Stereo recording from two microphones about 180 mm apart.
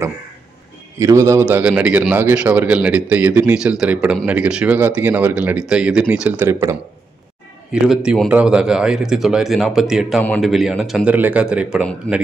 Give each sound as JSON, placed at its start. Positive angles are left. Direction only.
{"t": 0.9, "sound": "a man's voice", "side_deg": -15}